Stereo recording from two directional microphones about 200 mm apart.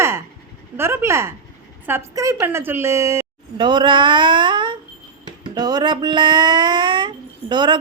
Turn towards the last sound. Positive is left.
turn(degrees=-20)  # may be behind; listen again after turning